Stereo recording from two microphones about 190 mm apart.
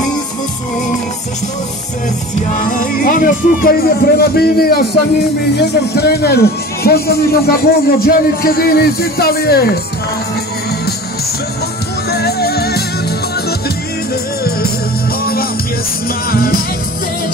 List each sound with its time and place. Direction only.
2.5 s a man's voice: 45° left (ahead or behind)
12.1 s music: 55° left (ahead or behind)
16.3 s speech: 50° left (ahead or behind)